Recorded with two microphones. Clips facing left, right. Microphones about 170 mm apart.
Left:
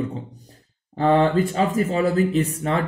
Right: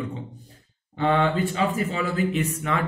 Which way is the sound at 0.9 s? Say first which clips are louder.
Left 4 dB; 40° left (ahead or behind).